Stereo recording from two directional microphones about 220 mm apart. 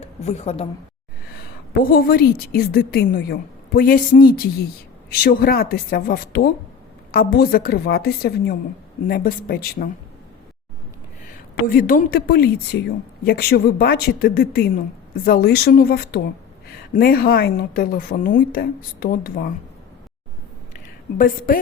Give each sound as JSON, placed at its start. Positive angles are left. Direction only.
{"t": 0.0, "sound": "speech", "side_deg": 30}
{"t": 1.3, "sound": "a woman's voice", "side_deg": 45}
{"t": 11.7, "sound": "a woman's voice", "side_deg": 40}
{"t": 20.7, "sound": "a sound", "side_deg": 40}